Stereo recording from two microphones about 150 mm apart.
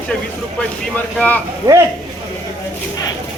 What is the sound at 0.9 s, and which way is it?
Speech, 10° left (ahead or behind).